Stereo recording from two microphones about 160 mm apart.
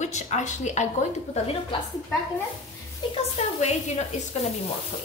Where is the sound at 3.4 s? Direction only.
40° left (ahead or behind).